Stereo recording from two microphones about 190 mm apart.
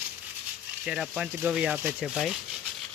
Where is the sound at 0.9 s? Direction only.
5° right (ahead or behind).